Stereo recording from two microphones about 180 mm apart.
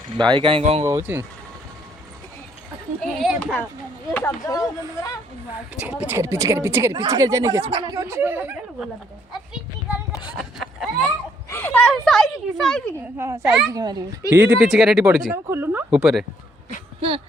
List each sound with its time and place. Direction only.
0.3 s speech: 30° right (ahead or behind)
0.9 s speech: 15° right (ahead or behind)
3.0 s speech: centre (ahead or behind); by 5.2 s 20° left (ahead or behind)
5.8 s speech: 5° right (ahead or behind)
9.3 s children playing: 5° right (ahead or behind)
10.1 s a sound: 25° left (ahead or behind)
10.3 s a sound: centre (ahead or behind)
11.4 s speech: 10° left (ahead or behind)
13.1 s a child's voice: 15° right (ahead or behind)
14.3 s speech: 5° right (ahead or behind)
15.3 s speech: 10° right (ahead or behind)